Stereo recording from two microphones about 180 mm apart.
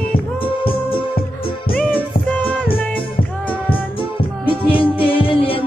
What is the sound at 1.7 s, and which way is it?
Music, 10° left (ahead or behind).